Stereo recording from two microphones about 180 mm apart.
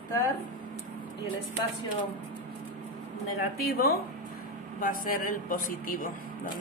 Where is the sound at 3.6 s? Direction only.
60° left (ahead or behind).